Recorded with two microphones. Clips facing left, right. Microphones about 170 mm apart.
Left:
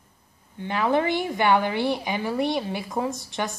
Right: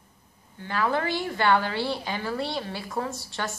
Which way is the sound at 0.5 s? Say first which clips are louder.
Left 4 dB; 20° left (ahead or behind).